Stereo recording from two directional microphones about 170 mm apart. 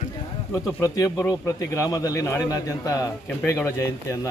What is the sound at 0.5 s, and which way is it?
A man's voice, 20° left (ahead or behind).